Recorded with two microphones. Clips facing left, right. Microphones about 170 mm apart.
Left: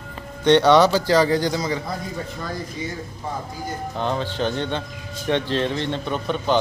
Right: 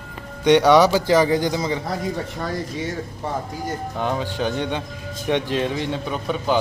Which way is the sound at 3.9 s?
10° right (ahead or behind).